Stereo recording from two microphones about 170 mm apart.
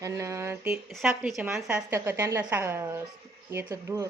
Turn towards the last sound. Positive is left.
turn(degrees=-15)  # may be behind; listen again after turning